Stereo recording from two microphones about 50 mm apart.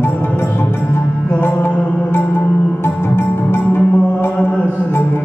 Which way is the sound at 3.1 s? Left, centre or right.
Left.